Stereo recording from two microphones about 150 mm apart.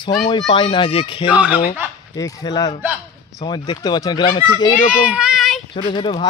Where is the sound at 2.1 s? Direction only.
25° left (ahead or behind).